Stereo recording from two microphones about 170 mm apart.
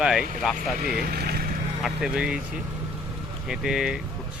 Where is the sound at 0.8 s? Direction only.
60° right (ahead or behind).